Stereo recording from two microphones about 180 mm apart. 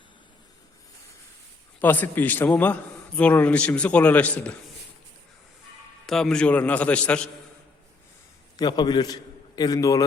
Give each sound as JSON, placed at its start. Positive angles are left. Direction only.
{"t": 1.8, "sound": "a man's voice", "side_deg": 10}
{"t": 6.1, "sound": "a man's voice", "side_deg": 5}
{"t": 8.5, "sound": "a man's voice", "side_deg": 20}